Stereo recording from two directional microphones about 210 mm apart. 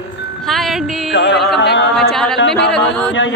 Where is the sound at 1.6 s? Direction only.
55° left (ahead or behind).